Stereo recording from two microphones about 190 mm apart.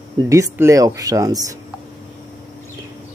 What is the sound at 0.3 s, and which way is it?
Speech, 15° right (ahead or behind).